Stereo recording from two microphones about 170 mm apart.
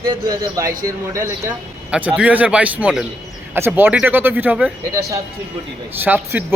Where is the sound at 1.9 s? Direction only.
5° right (ahead or behind).